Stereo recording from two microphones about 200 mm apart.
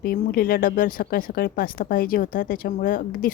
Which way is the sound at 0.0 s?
50° left (ahead or behind).